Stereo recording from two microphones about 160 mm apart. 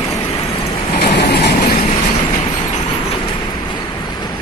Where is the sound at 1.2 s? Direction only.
90° left.